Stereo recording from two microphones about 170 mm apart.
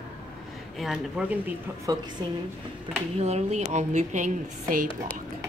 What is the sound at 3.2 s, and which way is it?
A woman's voice, 40° right (ahead or behind).